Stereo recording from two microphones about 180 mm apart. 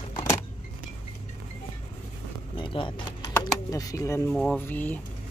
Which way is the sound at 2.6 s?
30° left (ahead or behind).